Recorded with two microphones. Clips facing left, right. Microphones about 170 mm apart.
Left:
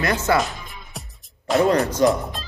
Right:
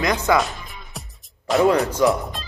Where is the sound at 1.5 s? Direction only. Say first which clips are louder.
Right 1 dB; centre (ahead or behind).